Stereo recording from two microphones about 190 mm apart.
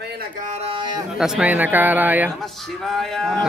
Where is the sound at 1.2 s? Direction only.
5° right (ahead or behind).